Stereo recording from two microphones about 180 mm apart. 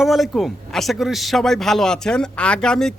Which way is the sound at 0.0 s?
Centre (ahead or behind).